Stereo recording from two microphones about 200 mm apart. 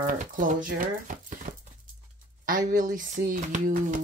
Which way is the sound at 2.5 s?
40° right (ahead or behind).